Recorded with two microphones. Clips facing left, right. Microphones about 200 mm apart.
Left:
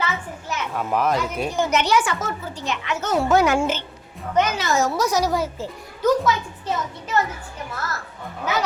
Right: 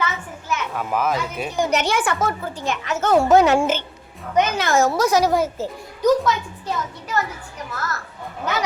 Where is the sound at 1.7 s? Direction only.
50° right (ahead or behind).